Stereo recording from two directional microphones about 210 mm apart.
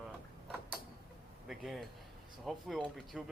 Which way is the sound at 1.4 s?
Centre (ahead or behind).